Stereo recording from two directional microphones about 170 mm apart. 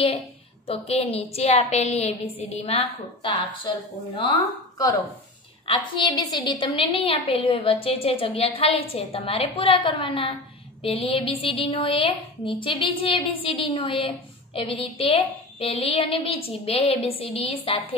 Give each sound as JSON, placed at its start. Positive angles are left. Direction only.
{"t": 0.7, "sound": "a woman's voice", "side_deg": 35}
{"t": 5.7, "sound": "a woman's voice", "side_deg": 25}